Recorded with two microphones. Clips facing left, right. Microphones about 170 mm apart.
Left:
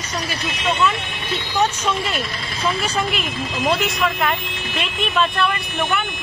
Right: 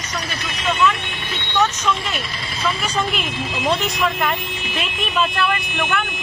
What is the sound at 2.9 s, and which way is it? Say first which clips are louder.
Speech: even; centre (ahead or behind).